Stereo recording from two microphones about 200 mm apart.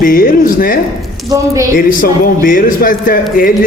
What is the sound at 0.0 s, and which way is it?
A man's voice, 45° left (ahead or behind).